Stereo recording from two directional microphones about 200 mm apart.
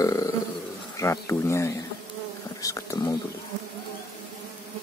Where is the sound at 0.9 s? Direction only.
15° left (ahead or behind).